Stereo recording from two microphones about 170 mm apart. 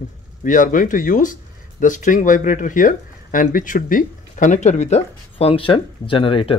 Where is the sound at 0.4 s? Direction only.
50° left (ahead or behind).